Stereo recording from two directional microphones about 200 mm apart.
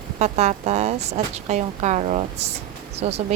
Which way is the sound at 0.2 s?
35° right (ahead or behind).